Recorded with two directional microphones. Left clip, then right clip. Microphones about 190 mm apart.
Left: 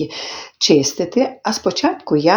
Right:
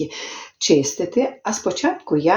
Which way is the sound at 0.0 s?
35° left (ahead or behind).